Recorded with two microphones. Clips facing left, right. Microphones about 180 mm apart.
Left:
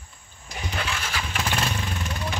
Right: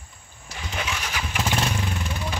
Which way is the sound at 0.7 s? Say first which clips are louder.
Right 1 dB; 15° right (ahead or behind).